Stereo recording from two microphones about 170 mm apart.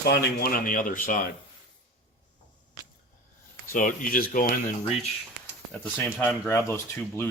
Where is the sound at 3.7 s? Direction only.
50° left (ahead or behind).